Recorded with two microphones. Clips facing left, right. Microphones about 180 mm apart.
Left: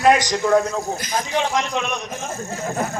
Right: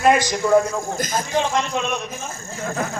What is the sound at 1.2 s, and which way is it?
Speech, 15° left (ahead or behind).